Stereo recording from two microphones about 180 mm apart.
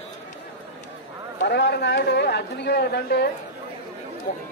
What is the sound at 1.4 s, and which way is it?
A man's voice, 70° left (ahead or behind).